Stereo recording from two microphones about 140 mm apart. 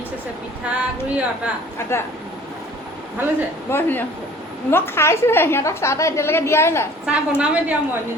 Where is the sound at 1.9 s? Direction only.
20° left (ahead or behind).